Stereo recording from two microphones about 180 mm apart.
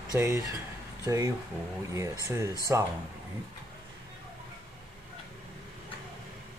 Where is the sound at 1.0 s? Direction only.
20° right (ahead or behind).